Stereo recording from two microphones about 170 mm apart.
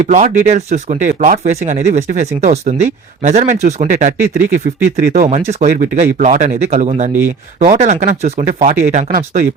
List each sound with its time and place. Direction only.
0.0 s speech: 45° right (ahead or behind)
5.5 s speech: 45° right (ahead or behind)